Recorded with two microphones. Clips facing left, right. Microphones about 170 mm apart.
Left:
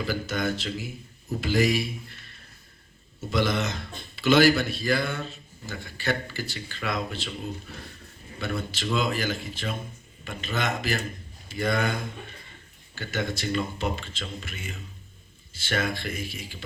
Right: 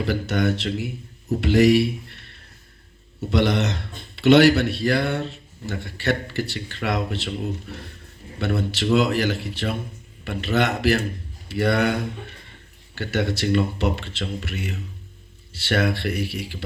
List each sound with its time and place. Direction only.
0.0 s a man's voice: 70° right (ahead or behind)